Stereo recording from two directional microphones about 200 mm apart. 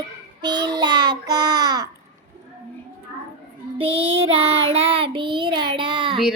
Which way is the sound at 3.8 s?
30° right (ahead or behind).